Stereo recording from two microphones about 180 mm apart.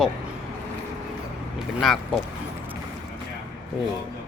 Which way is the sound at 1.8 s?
Centre (ahead or behind).